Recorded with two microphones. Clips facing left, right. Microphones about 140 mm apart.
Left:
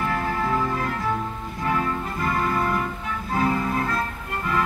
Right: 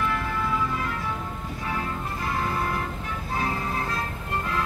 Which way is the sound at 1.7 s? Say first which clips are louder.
Left 6 dB; 65° left (ahead or behind).